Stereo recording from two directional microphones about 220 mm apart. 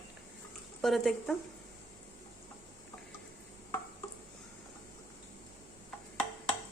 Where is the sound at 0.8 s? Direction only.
Centre (ahead or behind).